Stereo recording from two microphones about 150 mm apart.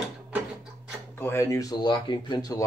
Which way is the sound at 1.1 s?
15° left (ahead or behind).